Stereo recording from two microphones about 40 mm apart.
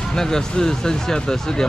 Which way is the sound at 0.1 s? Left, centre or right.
Centre.